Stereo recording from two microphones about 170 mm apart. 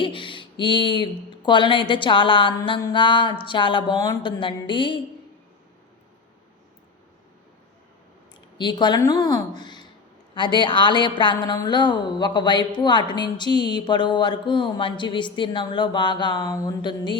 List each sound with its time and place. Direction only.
0.0 s a woman's voice: 30° left (ahead or behind)
8.5 s a woman's voice: 25° left (ahead or behind)